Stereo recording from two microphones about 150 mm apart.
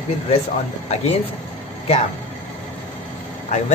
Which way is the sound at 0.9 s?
45° left (ahead or behind).